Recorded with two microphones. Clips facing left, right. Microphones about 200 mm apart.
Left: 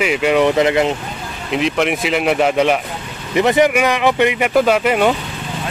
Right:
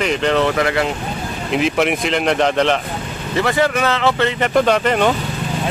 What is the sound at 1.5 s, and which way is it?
Speech, centre (ahead or behind).